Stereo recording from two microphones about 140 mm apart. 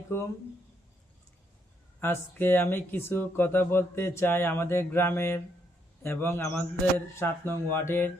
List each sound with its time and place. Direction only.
0.1 s speech: 15° left (ahead or behind)
2.0 s speech: 15° left (ahead or behind)